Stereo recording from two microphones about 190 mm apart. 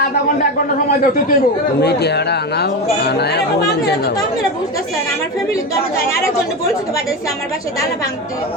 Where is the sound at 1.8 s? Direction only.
60° left (ahead or behind).